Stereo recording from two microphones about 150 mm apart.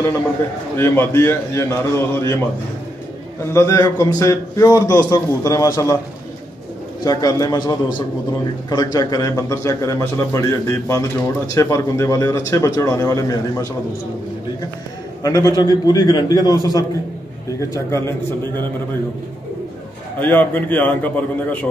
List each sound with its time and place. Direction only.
0.7 s a man's voice: 15° left (ahead or behind)
3.5 s a man's voice: 20° left (ahead or behind)
7.1 s a man's voice: 25° left (ahead or behind)
15.2 s a man's voice: 25° left (ahead or behind)
20.2 s a man's voice: 10° left (ahead or behind)